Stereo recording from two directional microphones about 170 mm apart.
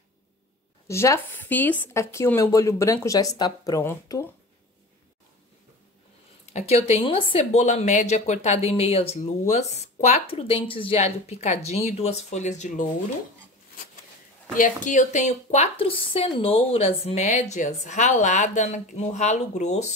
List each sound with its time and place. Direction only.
0.8 s speech: 15° left (ahead or behind)
6.5 s a woman's voice: 40° left (ahead or behind)
14.6 s a woman's voice: 50° left (ahead or behind)